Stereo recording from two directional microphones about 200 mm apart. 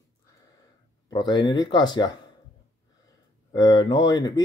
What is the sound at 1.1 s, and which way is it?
Speech, 20° left (ahead or behind).